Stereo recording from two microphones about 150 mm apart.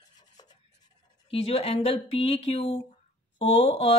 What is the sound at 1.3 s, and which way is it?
Speech, 40° left (ahead or behind).